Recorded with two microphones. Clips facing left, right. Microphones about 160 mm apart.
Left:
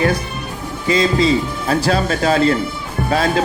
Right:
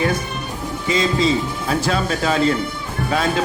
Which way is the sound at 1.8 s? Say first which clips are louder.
Left 4 dB; 40° left (ahead or behind).